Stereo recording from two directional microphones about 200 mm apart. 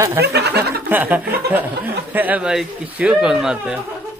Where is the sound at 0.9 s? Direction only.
10° right (ahead or behind).